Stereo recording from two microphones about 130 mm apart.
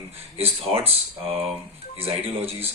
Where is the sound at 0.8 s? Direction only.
50° right (ahead or behind).